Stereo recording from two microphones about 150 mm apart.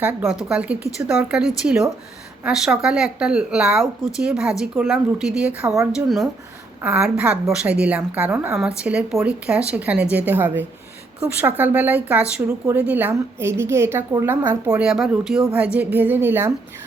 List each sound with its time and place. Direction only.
0.0 s speech: 10° right (ahead or behind)
1.4 s speech: 5° right (ahead or behind)
6.8 s speech: 5° right (ahead or behind)